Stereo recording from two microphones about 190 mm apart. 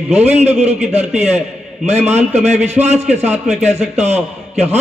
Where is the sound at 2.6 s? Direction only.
35° right (ahead or behind).